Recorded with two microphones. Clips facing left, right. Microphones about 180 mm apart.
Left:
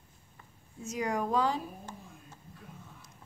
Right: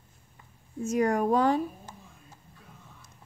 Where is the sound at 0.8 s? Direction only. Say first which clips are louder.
Right 7 dB; 50° right (ahead or behind).